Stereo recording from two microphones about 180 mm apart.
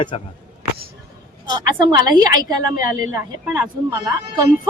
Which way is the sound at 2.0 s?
20° right (ahead or behind).